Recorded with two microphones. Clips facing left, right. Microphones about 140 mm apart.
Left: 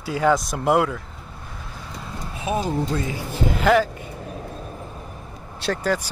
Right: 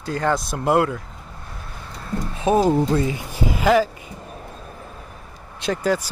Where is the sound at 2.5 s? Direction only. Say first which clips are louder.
Right 7 dB; 35° right (ahead or behind).